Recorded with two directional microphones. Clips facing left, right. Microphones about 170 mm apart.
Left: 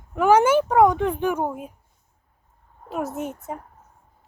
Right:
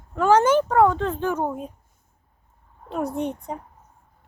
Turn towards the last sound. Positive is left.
turn(degrees=5)  # may be behind; listen again after turning